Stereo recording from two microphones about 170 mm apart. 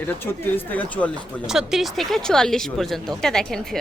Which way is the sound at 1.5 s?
5° right (ahead or behind).